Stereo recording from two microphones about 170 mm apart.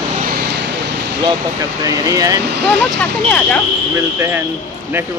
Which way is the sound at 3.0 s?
5° left (ahead or behind).